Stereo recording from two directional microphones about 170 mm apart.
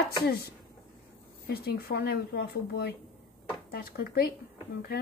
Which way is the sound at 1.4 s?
65° left (ahead or behind).